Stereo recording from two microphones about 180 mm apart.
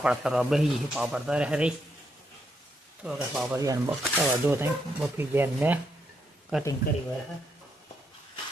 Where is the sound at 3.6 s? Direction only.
20° right (ahead or behind).